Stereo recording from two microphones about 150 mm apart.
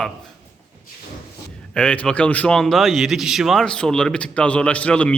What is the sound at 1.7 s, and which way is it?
A man's voice, 10° left (ahead or behind).